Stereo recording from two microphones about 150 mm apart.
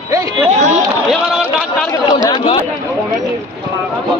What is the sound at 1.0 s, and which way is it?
Speech, centre (ahead or behind).